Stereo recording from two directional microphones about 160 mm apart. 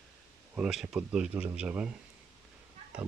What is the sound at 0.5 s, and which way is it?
Speech, 5° right (ahead or behind).